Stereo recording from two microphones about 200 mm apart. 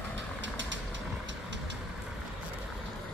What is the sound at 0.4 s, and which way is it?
Vehicle, 65° right (ahead or behind).